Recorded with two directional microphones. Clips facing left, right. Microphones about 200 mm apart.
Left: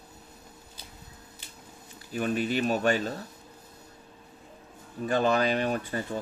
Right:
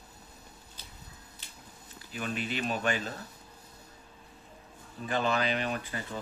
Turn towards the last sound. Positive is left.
turn(degrees=45)  # may be behind; listen again after turning